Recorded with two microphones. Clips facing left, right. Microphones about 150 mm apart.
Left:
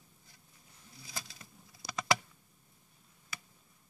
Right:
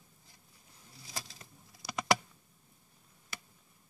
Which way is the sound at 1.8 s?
20° left (ahead or behind).